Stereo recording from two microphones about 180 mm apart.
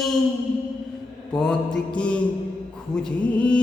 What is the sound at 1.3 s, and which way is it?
Music, 5° left (ahead or behind).